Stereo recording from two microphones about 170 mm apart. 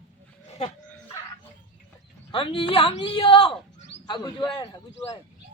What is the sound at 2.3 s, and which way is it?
A man's voice, 30° left (ahead or behind).